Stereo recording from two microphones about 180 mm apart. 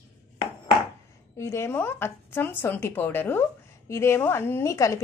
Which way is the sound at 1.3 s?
15° left (ahead or behind).